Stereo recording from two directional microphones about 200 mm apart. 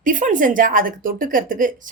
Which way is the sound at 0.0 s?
40° right (ahead or behind).